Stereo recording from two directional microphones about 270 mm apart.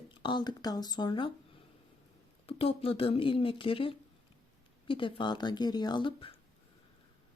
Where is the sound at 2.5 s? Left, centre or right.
Left.